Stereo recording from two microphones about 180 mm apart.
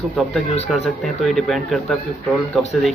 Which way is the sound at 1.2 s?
Centre (ahead or behind).